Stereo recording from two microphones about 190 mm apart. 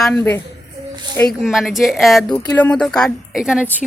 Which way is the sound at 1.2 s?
Centre (ahead or behind).